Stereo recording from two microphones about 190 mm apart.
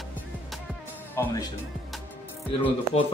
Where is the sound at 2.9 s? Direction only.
35° left (ahead or behind).